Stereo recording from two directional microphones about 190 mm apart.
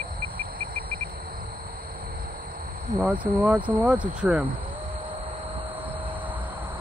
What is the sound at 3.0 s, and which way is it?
Speech, 5° right (ahead or behind).